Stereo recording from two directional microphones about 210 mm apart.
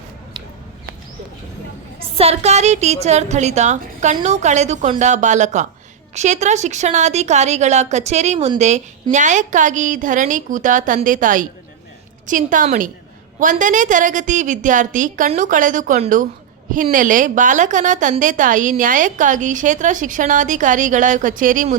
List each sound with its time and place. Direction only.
2.0 s a woman's voice: 30° right (ahead or behind)